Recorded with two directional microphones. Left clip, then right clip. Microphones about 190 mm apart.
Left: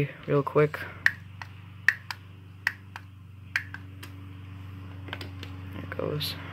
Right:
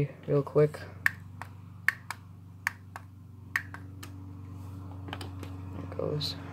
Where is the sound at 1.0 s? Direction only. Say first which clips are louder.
Left 4 dB; 20° right (ahead or behind).